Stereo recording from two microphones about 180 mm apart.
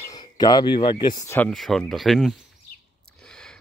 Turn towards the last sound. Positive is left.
turn(degrees=5)  # may be behind; listen again after turning